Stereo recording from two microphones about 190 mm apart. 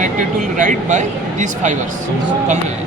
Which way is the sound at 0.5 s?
40° right (ahead or behind).